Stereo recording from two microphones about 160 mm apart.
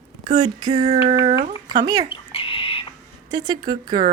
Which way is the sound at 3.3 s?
25° right (ahead or behind).